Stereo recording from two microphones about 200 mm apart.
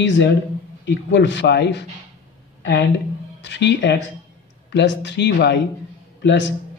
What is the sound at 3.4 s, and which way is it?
A man's voice, 60° left (ahead or behind).